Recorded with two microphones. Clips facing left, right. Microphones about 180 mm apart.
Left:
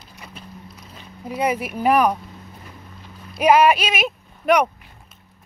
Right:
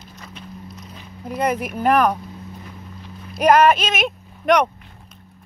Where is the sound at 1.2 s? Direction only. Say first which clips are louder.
Right 1 dB; 5° left (ahead or behind).